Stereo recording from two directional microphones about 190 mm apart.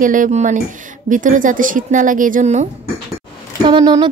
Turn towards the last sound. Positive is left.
turn(degrees=-25)  # may be behind; listen again after turning